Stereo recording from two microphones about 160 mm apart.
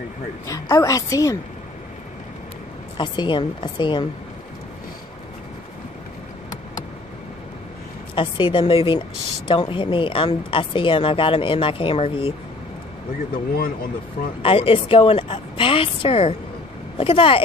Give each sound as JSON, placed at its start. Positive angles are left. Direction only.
{"t": 0.5, "sound": "a woman's voice", "side_deg": 20}
{"t": 3.0, "sound": "a woman's voice", "side_deg": 30}
{"t": 8.1, "sound": "a woman's voice", "side_deg": 30}
{"t": 13.3, "sound": "speech", "side_deg": 65}
{"t": 14.4, "sound": "a woman's voice", "side_deg": 35}